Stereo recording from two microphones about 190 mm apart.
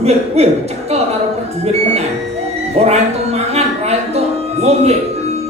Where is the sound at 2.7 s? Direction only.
35° right (ahead or behind).